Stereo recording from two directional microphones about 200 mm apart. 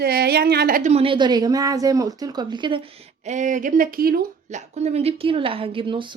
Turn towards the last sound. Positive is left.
turn(degrees=-25)  # may be behind; listen again after turning